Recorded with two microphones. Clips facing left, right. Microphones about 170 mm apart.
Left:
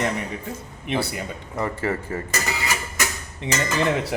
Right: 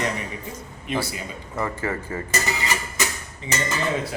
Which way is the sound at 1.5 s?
25° left (ahead or behind).